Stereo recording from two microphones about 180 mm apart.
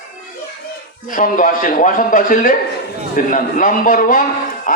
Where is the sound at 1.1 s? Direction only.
45° left (ahead or behind).